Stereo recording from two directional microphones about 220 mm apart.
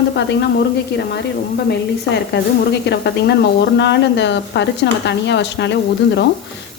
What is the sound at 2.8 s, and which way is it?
Speech, 50° left (ahead or behind).